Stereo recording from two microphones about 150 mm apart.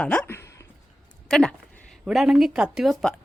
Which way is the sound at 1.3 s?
5° left (ahead or behind).